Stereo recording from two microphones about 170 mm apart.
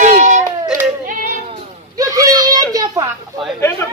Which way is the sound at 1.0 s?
55° right (ahead or behind).